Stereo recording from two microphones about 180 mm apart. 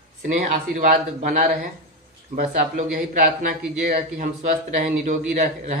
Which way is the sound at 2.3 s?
45° right (ahead or behind).